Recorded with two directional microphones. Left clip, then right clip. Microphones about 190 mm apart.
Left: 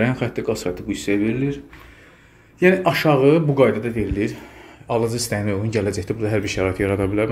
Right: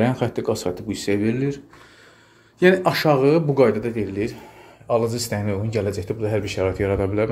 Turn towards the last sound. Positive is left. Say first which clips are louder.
# left 1 dB
turn(degrees=-5)  # may be behind; listen again after turning